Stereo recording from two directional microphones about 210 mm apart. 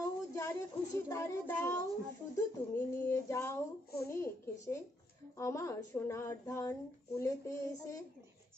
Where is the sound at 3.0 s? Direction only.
15° left (ahead or behind).